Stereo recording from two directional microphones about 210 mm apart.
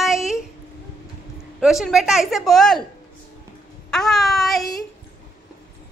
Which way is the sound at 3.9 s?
Centre (ahead or behind).